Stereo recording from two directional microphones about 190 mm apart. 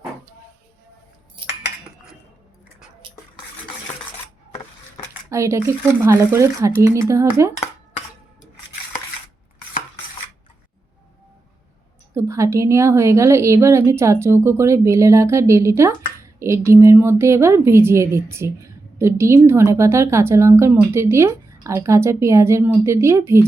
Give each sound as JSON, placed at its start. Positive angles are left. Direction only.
{"t": 1.4, "sound": "cutlery", "side_deg": -25}
{"t": 5.3, "sound": "a woman's voice", "side_deg": -15}
{"t": 12.1, "sound": "a woman's voice", "side_deg": -15}